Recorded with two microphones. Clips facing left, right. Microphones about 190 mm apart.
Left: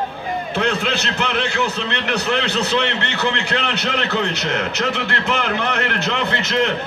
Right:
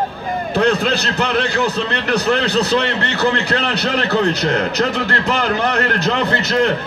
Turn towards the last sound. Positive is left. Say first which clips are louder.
# right 3 dB
turn(degrees=-40)  # may be behind; listen again after turning